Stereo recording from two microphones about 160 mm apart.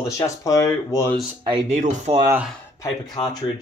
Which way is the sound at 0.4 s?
20° left (ahead or behind).